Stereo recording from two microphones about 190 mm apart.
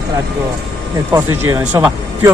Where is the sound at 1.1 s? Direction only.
10° right (ahead or behind).